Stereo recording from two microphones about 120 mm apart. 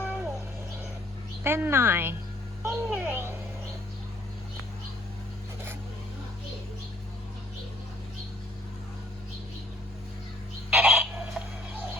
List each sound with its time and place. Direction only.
0.0 s a sound: 15° right (ahead or behind)
1.5 s a woman's voice: 20° right (ahead or behind)
10.8 s fowl: 10° right (ahead or behind)